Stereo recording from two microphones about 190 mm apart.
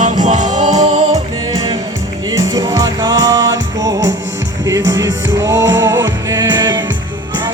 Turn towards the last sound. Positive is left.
turn(degrees=-20)  # may be behind; listen again after turning